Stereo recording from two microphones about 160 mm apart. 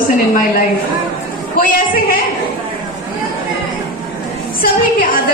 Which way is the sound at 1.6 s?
60° left (ahead or behind).